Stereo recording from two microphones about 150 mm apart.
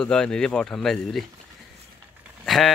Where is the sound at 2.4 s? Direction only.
Centre (ahead or behind).